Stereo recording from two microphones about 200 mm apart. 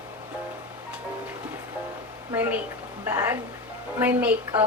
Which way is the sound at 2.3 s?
10° right (ahead or behind).